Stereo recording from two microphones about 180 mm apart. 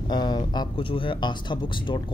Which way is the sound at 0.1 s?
25° left (ahead or behind).